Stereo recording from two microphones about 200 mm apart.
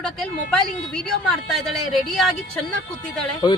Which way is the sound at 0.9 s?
5° left (ahead or behind).